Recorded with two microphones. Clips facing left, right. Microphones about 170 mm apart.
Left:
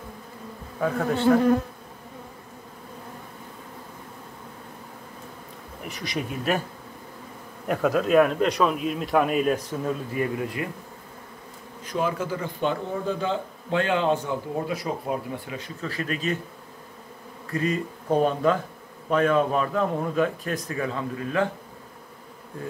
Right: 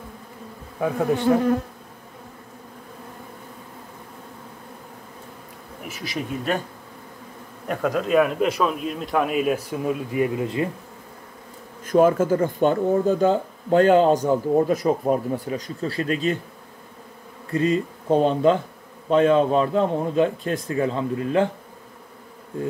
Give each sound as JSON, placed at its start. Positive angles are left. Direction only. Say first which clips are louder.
{"t": 0.7, "sound": "bee", "louder": "right 3 dB", "side_deg": -15}
{"t": 5.9, "sound": "speech", "louder": "right 1 dB", "side_deg": -5}
{"t": 7.6, "sound": "speech", "louder": "left 1 dB", "side_deg": 0}
{"t": 11.8, "sound": "speech", "louder": "right 10 dB", "side_deg": -50}
{"t": 17.5, "sound": "a man's voice", "louder": "right 5 dB", "side_deg": -25}